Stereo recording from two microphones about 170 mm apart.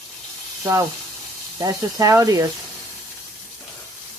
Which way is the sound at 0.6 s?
20° right (ahead or behind).